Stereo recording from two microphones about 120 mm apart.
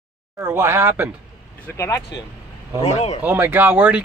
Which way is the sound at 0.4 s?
25° right (ahead or behind).